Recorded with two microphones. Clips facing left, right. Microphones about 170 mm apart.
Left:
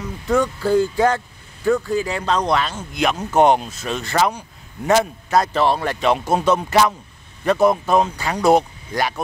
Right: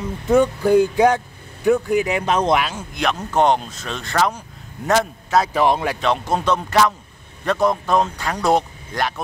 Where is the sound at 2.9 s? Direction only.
Centre (ahead or behind).